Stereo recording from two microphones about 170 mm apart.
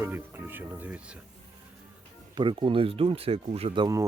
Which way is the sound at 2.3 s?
30° right (ahead or behind).